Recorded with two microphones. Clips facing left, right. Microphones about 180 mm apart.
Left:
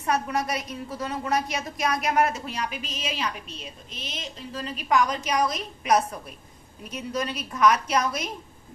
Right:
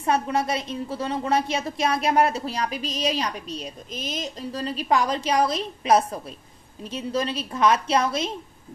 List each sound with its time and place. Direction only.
0.0 s a woman's voice: 25° right (ahead or behind)